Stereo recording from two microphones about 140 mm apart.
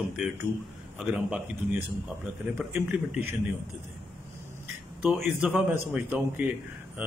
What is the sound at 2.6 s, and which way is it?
Speech, 5° right (ahead or behind).